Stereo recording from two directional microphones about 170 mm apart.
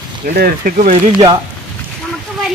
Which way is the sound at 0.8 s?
45° right (ahead or behind).